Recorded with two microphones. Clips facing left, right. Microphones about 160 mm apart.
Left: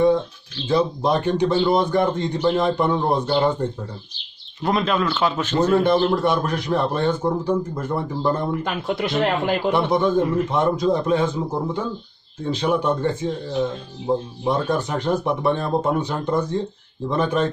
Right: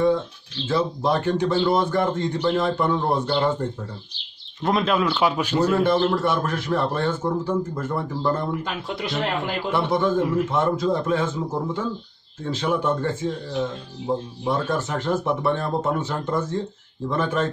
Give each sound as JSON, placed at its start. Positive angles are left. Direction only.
{"t": 0.7, "sound": "speech", "side_deg": 15}
{"t": 4.6, "sound": "speech", "side_deg": 0}
{"t": 5.9, "sound": "speech", "side_deg": 15}
{"t": 8.6, "sound": "speech", "side_deg": 55}
{"t": 9.7, "sound": "speech", "side_deg": 15}
{"t": 10.1, "sound": "a man's voice", "side_deg": -5}
{"t": 10.5, "sound": "speech", "side_deg": 15}
{"t": 14.4, "sound": "speech", "side_deg": 20}